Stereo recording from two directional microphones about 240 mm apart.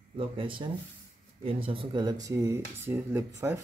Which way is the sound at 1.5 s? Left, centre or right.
Right.